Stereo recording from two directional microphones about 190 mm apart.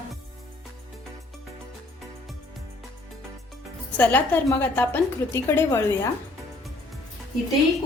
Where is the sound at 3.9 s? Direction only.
10° left (ahead or behind).